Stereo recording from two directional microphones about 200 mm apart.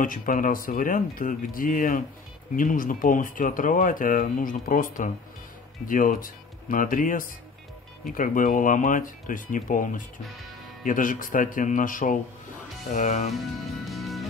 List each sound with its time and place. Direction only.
0.0 s speech: 45° left (ahead or behind)
13.8 s music: centre (ahead or behind)